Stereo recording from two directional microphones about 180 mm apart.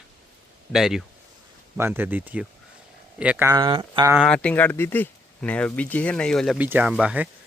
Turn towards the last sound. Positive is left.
turn(degrees=-5)  # may be behind; listen again after turning